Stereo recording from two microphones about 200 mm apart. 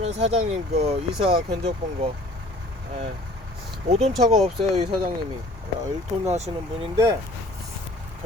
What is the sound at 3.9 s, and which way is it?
Speech, 30° right (ahead or behind).